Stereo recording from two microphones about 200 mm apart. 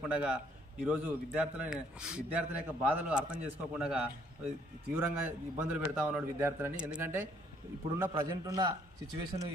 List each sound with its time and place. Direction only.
0.1 s a man's voice: 5° right (ahead or behind)